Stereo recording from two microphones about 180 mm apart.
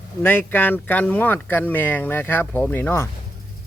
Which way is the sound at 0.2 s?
10° left (ahead or behind).